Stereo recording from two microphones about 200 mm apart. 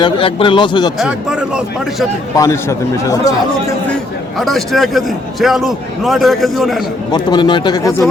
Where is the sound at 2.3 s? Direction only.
15° left (ahead or behind).